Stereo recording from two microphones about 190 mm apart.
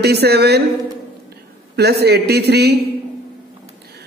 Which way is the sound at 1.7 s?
60° right (ahead or behind).